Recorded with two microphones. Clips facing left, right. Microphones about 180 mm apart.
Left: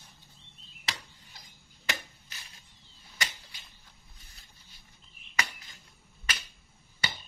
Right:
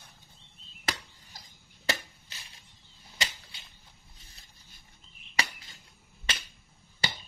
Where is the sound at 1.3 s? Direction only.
40° right (ahead or behind).